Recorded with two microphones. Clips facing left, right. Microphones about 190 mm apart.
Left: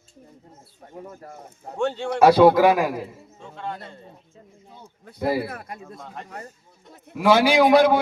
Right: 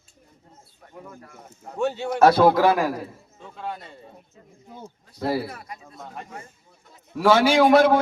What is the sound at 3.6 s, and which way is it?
Speech, 5° right (ahead or behind).